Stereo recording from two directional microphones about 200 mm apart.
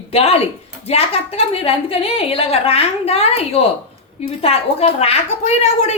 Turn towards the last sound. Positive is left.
turn(degrees=35)  # may be behind; listen again after turning